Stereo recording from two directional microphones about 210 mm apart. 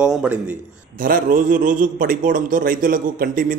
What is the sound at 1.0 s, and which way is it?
A man's voice, 40° right (ahead or behind).